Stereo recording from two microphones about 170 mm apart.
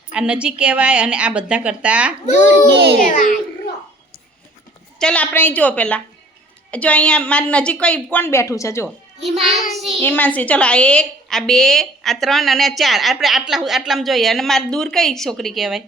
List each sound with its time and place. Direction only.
0.1 s a woman's voice: 5° right (ahead or behind)
2.7 s a child's voice: 80° right
3.2 s a child's voice: 55° left (ahead or behind)
4.9 s a woman's voice: 5° left (ahead or behind)
9.4 s a woman's voice: centre (ahead or behind)